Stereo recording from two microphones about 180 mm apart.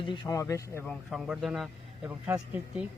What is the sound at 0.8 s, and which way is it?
A man's voice, centre (ahead or behind).